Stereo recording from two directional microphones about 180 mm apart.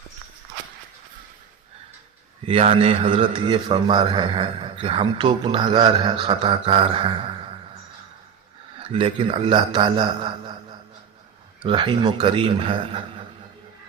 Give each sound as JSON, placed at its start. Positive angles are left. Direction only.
{"t": 2.5, "sound": "a man's voice", "side_deg": -35}
{"t": 8.9, "sound": "a man's voice", "side_deg": -30}